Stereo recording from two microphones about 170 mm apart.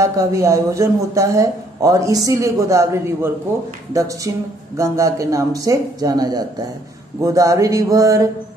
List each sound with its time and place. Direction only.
0.0 s a man's voice: 20° right (ahead or behind)